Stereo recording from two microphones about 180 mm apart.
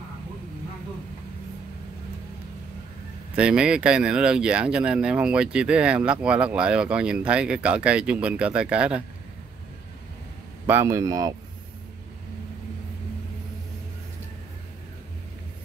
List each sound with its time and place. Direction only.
3.3 s speech: 5° right (ahead or behind)
10.7 s speech: 15° right (ahead or behind)